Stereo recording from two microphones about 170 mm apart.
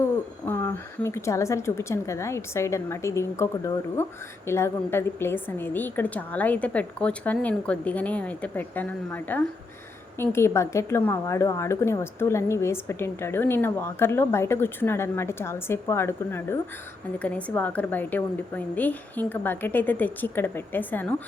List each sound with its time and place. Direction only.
0.0 s speech: 15° left (ahead or behind)